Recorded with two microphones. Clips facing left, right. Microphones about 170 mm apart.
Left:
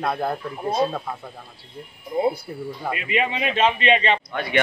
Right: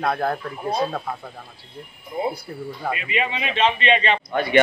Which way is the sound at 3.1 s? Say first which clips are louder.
Left 4 dB; 45° left (ahead or behind).